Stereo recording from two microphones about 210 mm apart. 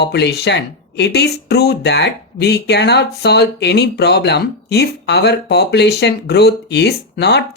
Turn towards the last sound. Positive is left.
turn(degrees=55)  # may be behind; listen again after turning